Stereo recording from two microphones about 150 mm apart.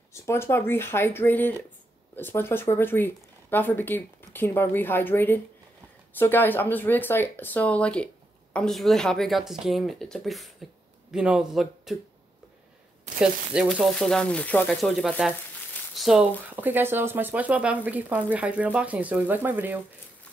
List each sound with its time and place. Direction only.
0.1 s speech: 20° left (ahead or behind); by 12.0 s centre (ahead or behind)
13.2 s speech: 5° right (ahead or behind); by 14.8 s 10° left (ahead or behind)
14.8 s speech: centre (ahead or behind)
16.5 s speech: 15° right (ahead or behind)